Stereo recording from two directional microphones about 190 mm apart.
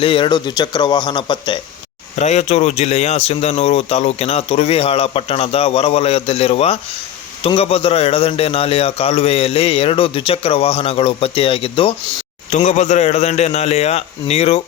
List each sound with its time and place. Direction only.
0.0 s speech: 25° left (ahead or behind)
2.1 s speech: 35° left (ahead or behind)